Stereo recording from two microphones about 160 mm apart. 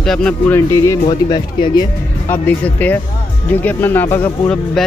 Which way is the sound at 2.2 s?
10° left (ahead or behind).